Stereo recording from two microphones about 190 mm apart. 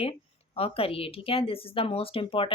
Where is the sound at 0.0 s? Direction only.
30° left (ahead or behind).